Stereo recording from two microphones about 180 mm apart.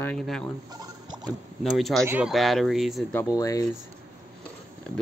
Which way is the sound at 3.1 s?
15° left (ahead or behind).